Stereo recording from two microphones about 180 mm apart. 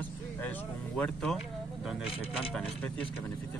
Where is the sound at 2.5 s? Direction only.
5° left (ahead or behind).